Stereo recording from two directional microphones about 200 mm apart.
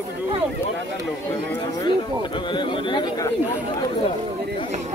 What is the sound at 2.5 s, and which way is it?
Speech, 25° left (ahead or behind).